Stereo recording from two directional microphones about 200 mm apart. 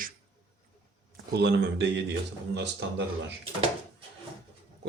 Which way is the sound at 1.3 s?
55° right (ahead or behind).